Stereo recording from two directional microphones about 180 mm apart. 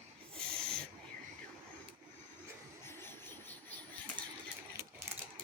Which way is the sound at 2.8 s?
10° left (ahead or behind).